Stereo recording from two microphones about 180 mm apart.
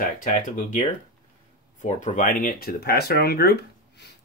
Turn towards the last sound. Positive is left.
turn(degrees=65)  # may be behind; listen again after turning